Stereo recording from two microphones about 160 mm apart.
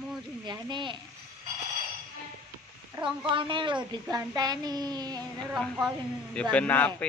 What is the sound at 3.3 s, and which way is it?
A woman's voice, 30° right (ahead or behind).